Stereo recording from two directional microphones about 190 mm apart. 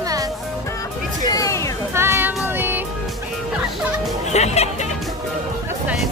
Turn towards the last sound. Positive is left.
turn(degrees=35)  # may be behind; listen again after turning